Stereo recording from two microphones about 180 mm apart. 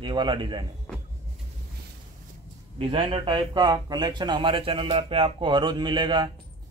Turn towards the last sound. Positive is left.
turn(degrees=-25)  # may be behind; listen again after turning